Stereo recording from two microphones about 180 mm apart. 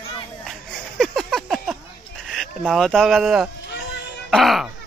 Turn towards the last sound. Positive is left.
turn(degrees=0)  # may be behind; listen again after turning